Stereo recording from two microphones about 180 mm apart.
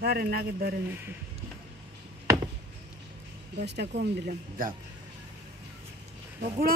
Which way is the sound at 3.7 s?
70° right (ahead or behind).